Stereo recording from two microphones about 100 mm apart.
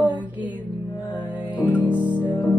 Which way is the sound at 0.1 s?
50° left (ahead or behind).